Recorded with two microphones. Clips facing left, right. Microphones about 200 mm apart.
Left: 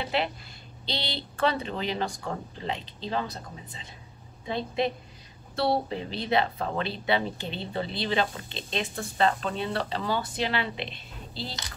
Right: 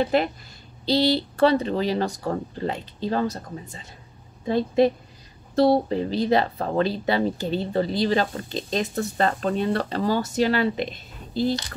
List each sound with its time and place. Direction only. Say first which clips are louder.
0.0 s speech: right 8 dB; 45° right (ahead or behind)